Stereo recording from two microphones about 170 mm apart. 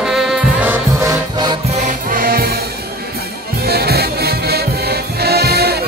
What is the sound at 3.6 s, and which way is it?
Music, 70° right (ahead or behind).